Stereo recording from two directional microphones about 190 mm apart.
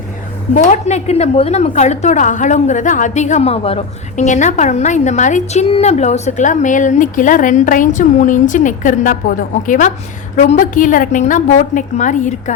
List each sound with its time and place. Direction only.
0.7 s a woman's voice: 35° left (ahead or behind)